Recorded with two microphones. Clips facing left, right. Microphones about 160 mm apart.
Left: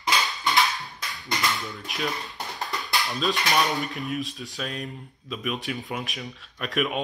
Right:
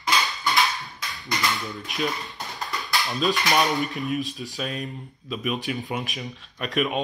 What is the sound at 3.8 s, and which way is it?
Speech, centre (ahead or behind).